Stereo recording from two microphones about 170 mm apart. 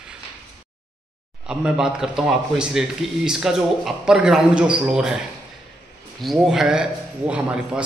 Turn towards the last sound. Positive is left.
turn(degrees=-5)  # may be behind; listen again after turning